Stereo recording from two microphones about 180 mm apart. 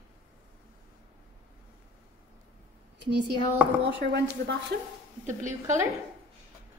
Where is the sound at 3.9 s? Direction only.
75° right (ahead or behind).